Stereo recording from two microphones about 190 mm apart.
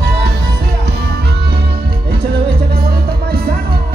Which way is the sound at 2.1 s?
55° right (ahead or behind).